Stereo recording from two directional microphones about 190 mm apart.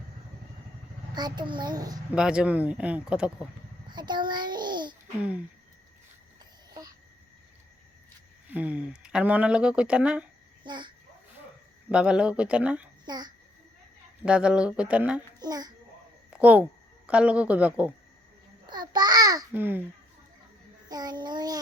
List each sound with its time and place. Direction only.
1.1 s a child's voice: 20° right (ahead or behind)
2.1 s speech: 5° right (ahead or behind)
3.8 s a child's voice: 25° right (ahead or behind)
8.4 s speech: 10° right (ahead or behind)
10.6 s a child's voice: 25° right (ahead or behind)
11.9 s speech: 5° right (ahead or behind)
13.1 s a child's voice: 20° right (ahead or behind)
14.3 s speech: 5° right (ahead or behind)
15.4 s a child's voice: 20° right (ahead or behind)
16.3 s speech: 10° right (ahead or behind)
18.6 s a child's voice: 20° right (ahead or behind)
20.9 s a child's voice: 20° right (ahead or behind)